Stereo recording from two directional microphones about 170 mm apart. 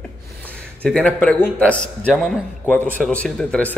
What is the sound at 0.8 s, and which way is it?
Speech, 5° left (ahead or behind).